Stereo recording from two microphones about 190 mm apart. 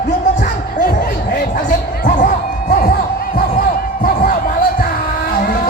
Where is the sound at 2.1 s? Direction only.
40° left (ahead or behind).